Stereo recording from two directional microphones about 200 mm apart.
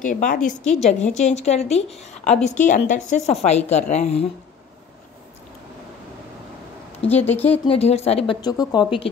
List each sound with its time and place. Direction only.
0.0 s a woman's voice: 40° left (ahead or behind)
7.1 s speech: 10° left (ahead or behind)
7.6 s speech: 30° left (ahead or behind)